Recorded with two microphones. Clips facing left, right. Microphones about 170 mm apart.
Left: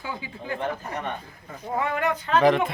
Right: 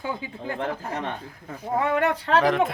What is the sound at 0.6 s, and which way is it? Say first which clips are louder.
Speech: right 1 dB; 90° right.